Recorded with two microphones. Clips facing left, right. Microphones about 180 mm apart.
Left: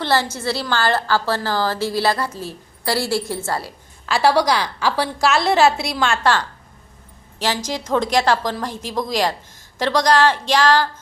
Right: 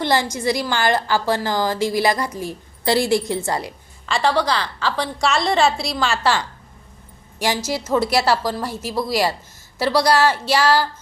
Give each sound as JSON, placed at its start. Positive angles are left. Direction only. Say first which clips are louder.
{"t": 0.0, "sound": "a woman's voice", "louder": "right 1 dB", "side_deg": -15}
{"t": 4.0, "sound": "a woman's voice", "louder": "left 3 dB", "side_deg": 5}